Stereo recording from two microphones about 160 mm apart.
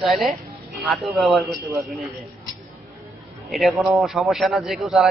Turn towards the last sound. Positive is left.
turn(degrees=0)  # may be behind; listen again after turning